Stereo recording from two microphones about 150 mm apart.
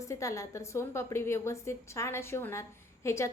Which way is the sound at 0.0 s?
20° left (ahead or behind).